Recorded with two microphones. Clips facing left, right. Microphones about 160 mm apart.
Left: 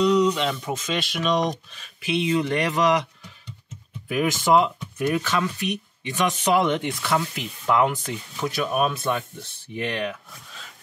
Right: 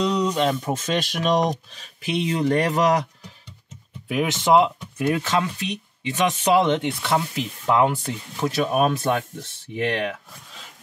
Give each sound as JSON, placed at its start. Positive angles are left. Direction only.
{"t": 0.0, "sound": "speech", "side_deg": -35}
{"t": 4.1, "sound": "speech", "side_deg": -20}
{"t": 8.7, "sound": "speech", "side_deg": -40}